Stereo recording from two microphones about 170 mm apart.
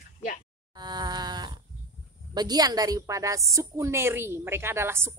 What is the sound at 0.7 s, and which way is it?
A woman's voice, 25° right (ahead or behind).